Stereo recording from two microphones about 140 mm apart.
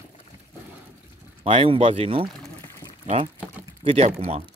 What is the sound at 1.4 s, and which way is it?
Speech, 40° right (ahead or behind).